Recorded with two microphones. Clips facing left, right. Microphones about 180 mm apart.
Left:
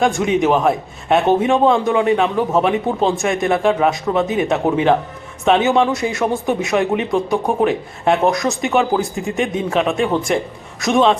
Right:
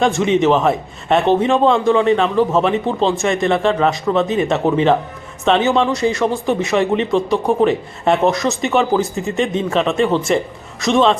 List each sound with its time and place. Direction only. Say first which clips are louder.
0.0 s speech: right 1 dB; centre (ahead or behind)
4.1 s speech: right 1 dB; 15° left (ahead or behind)